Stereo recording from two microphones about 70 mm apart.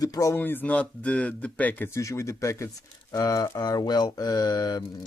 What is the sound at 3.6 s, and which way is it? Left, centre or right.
Speech, left.